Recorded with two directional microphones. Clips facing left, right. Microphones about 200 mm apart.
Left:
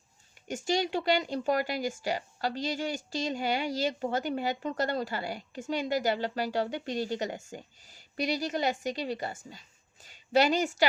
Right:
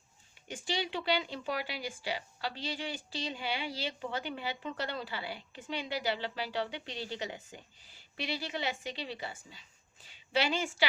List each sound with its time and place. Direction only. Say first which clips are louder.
0.4 s speech: left 7 dB; 45° left (ahead or behind)